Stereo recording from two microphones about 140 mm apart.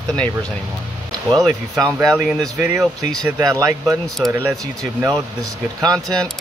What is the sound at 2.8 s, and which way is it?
Speech, 5° left (ahead or behind).